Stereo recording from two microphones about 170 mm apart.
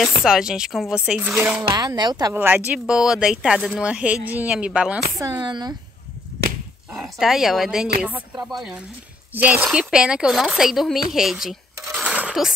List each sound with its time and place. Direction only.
0.0 s speech: centre (ahead or behind)
1.8 s speech: 25° right (ahead or behind)
2.3 s speech: 10° right (ahead or behind)
5.4 s speech: 25° right (ahead or behind)
6.9 s speech: 5° right (ahead or behind)
11.8 s a sound: 10° right (ahead or behind)